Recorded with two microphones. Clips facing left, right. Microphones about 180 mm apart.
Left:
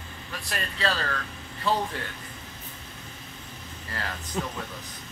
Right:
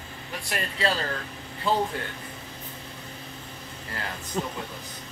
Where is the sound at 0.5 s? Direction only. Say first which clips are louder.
Right 2 dB; 20° right (ahead or behind).